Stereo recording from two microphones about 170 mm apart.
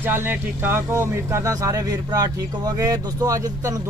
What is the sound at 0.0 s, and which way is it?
Speech, 10° right (ahead or behind).